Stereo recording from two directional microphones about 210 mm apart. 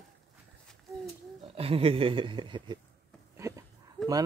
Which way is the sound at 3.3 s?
15° right (ahead or behind).